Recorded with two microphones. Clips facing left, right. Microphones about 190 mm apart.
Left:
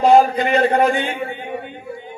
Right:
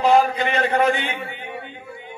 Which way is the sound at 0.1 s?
35° left (ahead or behind).